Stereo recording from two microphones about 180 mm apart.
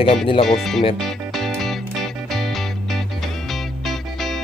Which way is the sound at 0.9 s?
Centre (ahead or behind).